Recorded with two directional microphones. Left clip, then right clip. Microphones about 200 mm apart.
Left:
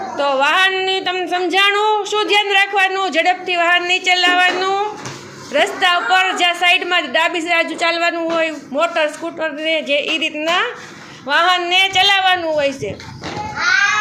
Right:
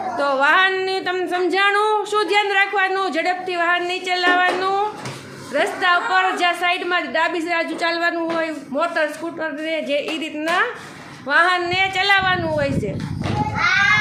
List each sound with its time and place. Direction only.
0.2 s a woman's voice: centre (ahead or behind)